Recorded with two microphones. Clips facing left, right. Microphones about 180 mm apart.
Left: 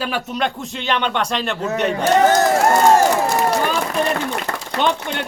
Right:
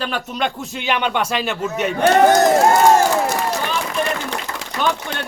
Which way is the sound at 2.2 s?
15° right (ahead or behind).